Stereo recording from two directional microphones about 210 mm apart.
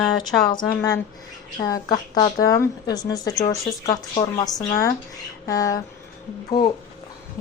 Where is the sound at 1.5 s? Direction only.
20° left (ahead or behind).